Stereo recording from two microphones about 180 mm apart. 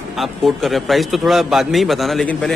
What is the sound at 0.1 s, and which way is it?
A man's voice, centre (ahead or behind).